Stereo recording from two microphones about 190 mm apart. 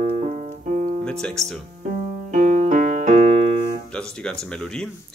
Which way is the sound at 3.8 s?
5° left (ahead or behind).